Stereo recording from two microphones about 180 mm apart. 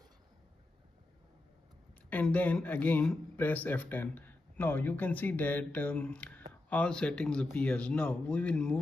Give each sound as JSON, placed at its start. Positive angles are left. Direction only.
{"t": 2.0, "sound": "speech", "side_deg": 10}